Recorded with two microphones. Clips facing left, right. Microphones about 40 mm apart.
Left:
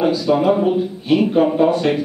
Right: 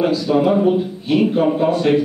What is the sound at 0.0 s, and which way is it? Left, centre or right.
Speech, centre.